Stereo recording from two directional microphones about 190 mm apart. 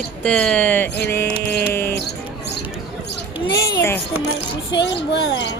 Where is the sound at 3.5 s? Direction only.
60° left (ahead or behind).